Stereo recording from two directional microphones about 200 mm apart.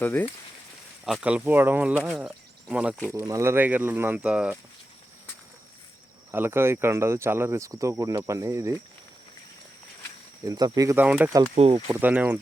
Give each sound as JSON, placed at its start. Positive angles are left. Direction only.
{"t": 0.0, "sound": "speech", "side_deg": 10}
{"t": 1.0, "sound": "speech", "side_deg": -5}
{"t": 3.1, "sound": "speech", "side_deg": -15}
{"t": 6.3, "sound": "speech", "side_deg": -10}
{"t": 10.4, "sound": "speech", "side_deg": -15}
{"t": 11.5, "sound": "speech", "side_deg": -30}
{"t": 11.9, "sound": "speech", "side_deg": -10}